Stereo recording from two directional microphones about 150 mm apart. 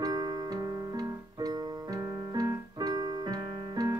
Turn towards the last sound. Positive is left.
turn(degrees=-25)  # may be behind; listen again after turning